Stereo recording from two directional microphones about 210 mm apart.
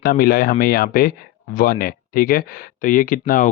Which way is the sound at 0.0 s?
45° left (ahead or behind).